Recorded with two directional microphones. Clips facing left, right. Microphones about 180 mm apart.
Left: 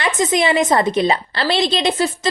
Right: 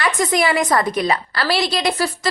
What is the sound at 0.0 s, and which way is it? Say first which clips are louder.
A woman's voice: left 1 dB; 20° left (ahead or behind).